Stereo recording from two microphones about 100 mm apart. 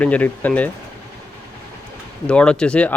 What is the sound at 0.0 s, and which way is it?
Speech, 15° left (ahead or behind).